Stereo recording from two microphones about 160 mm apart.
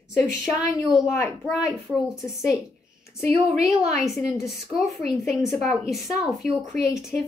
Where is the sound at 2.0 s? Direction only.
20° left (ahead or behind).